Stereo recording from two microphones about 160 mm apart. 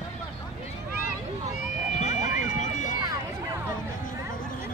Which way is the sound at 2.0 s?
50° left (ahead or behind).